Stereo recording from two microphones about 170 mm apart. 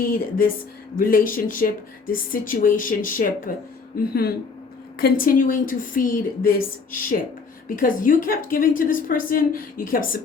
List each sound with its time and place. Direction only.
0.0 s a woman's voice: 55° left (ahead or behind)